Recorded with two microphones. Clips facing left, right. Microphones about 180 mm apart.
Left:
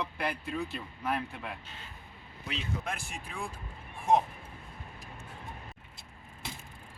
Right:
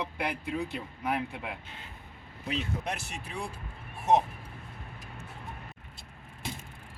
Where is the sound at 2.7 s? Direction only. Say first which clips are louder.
Right 2 dB; 50° right (ahead or behind).